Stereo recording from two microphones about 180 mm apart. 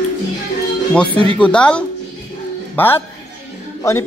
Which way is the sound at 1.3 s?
5° left (ahead or behind).